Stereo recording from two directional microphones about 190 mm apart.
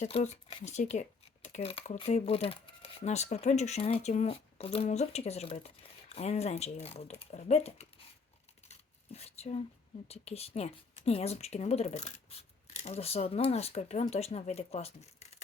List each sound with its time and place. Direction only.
0.0 s speech: 35° left (ahead or behind)
9.1 s a sound: 35° left (ahead or behind)
10.1 s speech: 35° left (ahead or behind)